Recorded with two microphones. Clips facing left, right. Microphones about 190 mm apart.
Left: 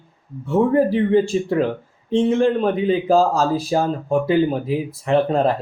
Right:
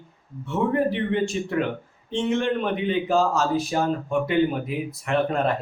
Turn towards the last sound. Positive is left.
turn(degrees=30)  # may be behind; listen again after turning